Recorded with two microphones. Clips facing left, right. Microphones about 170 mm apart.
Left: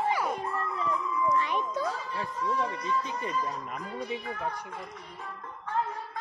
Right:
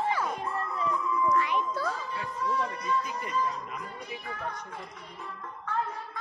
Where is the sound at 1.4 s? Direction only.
20° left (ahead or behind).